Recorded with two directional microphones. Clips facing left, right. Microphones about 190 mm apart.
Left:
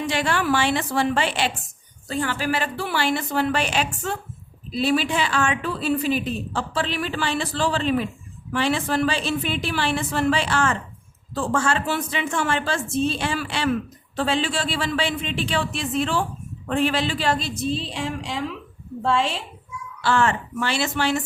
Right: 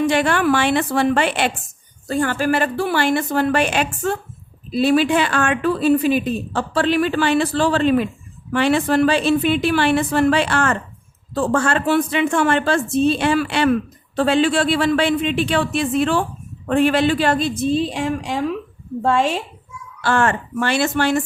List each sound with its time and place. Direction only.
0.0 s a woman's voice: 55° right (ahead or behind)